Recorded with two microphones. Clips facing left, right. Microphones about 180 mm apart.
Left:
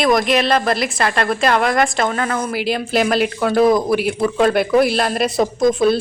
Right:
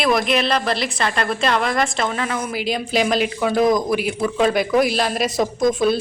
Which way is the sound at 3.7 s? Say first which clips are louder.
Left 3 dB; 30° left (ahead or behind).